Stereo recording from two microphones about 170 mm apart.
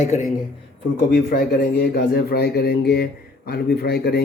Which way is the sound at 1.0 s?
60° left (ahead or behind).